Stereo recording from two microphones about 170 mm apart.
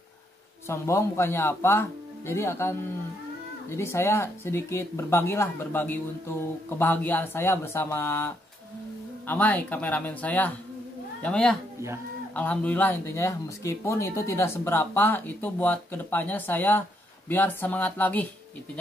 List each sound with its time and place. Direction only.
0.7 s speech: 15° left (ahead or behind)
3.7 s speech: 15° left (ahead or behind)
9.3 s a man's voice: 10° left (ahead or behind)